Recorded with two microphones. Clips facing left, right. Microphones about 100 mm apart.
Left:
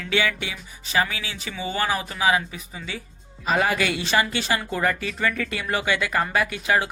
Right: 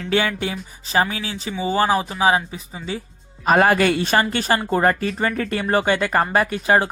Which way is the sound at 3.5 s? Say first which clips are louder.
Right 7 dB; 55° right (ahead or behind).